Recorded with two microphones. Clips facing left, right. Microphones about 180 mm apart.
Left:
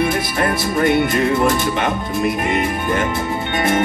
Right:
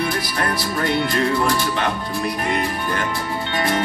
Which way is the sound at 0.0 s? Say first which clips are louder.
Left 5 dB; 20° left (ahead or behind).